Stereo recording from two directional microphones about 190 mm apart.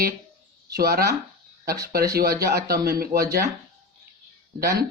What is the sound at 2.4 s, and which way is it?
Speech, 55° right (ahead or behind).